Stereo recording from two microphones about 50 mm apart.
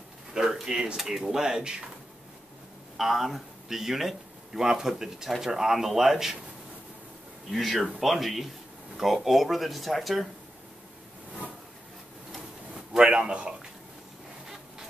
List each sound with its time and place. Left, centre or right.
0.3 s speech: centre
3.0 s speech: centre
7.4 s speech: centre
12.9 s a man's voice: centre